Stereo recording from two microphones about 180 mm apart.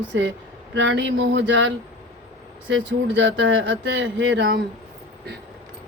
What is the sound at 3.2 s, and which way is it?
Speech, 90° right.